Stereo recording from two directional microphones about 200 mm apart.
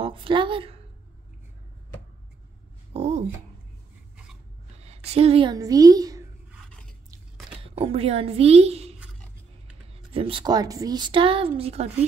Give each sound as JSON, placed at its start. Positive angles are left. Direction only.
{"t": 0.0, "sound": "a woman's voice", "side_deg": -25}
{"t": 2.9, "sound": "a sound", "side_deg": -35}
{"t": 4.7, "sound": "a woman's voice", "side_deg": -30}
{"t": 6.7, "sound": "scrape", "side_deg": 5}
{"t": 7.5, "sound": "speech", "side_deg": -30}
{"t": 10.1, "sound": "speech", "side_deg": -25}